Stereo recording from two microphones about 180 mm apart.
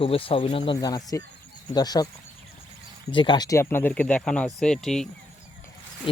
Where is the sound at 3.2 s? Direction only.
25° left (ahead or behind); by 5.0 s 5° left (ahead or behind).